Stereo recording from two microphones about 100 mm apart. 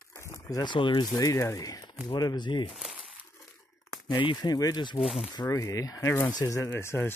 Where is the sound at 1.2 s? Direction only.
35° left (ahead or behind); by 2.6 s 50° left (ahead or behind).